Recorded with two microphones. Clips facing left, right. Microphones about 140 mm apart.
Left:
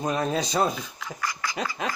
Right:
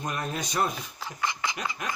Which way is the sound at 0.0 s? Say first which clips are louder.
Left 7 dB; 30° left (ahead or behind).